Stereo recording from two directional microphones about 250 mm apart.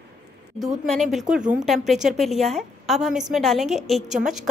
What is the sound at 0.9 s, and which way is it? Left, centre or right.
A woman's voice, centre.